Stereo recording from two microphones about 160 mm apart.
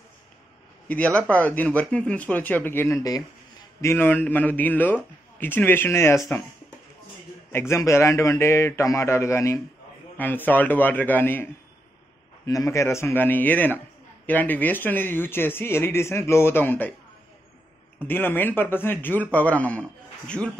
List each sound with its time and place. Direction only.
0.8 s speech: 10° left (ahead or behind)
7.5 s speech: 15° left (ahead or behind)
12.4 s speech: 20° left (ahead or behind)
17.9 s speech: 10° left (ahead or behind)